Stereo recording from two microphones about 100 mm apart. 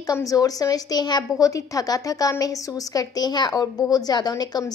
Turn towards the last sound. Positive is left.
turn(degrees=40)  # may be behind; listen again after turning